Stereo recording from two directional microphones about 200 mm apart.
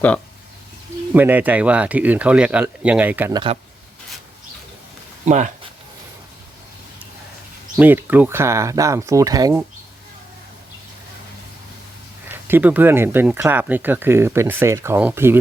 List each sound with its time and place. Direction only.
1.1 s speech: 10° right (ahead or behind)
3.3 s speech: 25° right (ahead or behind)
5.2 s speech: 35° right (ahead or behind)
7.8 s speech: 10° right (ahead or behind)
12.3 s speech: 10° right (ahead or behind)